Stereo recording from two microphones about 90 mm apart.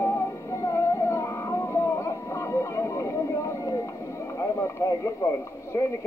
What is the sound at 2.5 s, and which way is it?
Vehicle, 35° left (ahead or behind).